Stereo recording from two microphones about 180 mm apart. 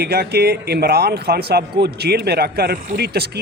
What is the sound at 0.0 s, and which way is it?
Speech, 60° right (ahead or behind).